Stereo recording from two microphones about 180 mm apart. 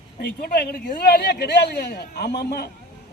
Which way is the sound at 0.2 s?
60° left (ahead or behind).